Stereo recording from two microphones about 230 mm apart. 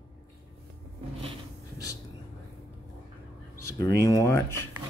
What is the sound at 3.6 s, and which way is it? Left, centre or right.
Speech, centre.